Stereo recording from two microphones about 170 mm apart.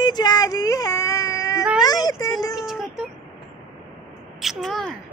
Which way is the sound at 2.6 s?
Centre (ahead or behind).